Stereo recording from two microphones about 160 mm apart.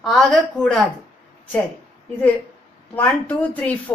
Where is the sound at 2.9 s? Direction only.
10° left (ahead or behind).